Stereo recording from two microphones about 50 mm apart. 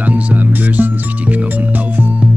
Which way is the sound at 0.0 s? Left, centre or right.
Right.